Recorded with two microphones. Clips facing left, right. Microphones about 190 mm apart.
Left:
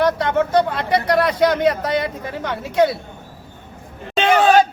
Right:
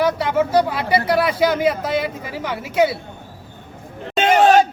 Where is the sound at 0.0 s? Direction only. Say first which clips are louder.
Left 1 dB; 5° right (ahead or behind).